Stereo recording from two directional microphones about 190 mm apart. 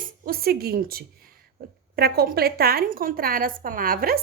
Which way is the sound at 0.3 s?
55° right (ahead or behind).